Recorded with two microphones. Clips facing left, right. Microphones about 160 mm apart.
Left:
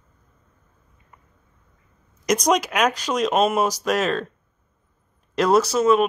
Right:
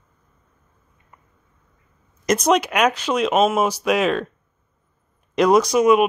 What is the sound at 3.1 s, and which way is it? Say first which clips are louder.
Speech: right 2 dB; 10° right (ahead or behind).